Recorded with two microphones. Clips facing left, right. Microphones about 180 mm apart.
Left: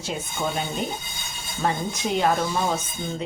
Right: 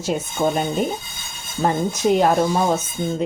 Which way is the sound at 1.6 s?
45° right (ahead or behind).